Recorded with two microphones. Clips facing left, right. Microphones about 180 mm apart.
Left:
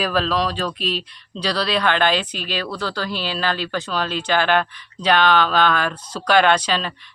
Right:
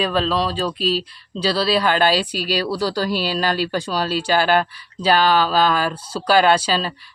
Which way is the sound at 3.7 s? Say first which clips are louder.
Right 2 dB; 10° right (ahead or behind).